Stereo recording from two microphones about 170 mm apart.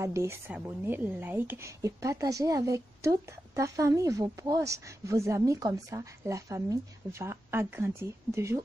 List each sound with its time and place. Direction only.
0.0 s a woman's voice: 15° right (ahead or behind)